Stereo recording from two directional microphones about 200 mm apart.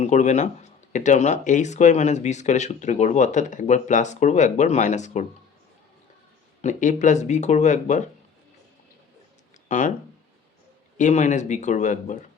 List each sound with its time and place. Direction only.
0.0 s speech: 35° left (ahead or behind)
6.6 s speech: 40° left (ahead or behind)
9.6 s speech: 35° left (ahead or behind)
10.9 s speech: 35° left (ahead or behind)